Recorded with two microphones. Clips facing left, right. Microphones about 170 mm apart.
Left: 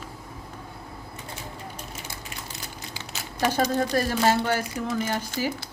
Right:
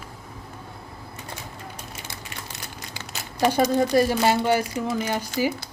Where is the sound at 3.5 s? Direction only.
15° right (ahead or behind).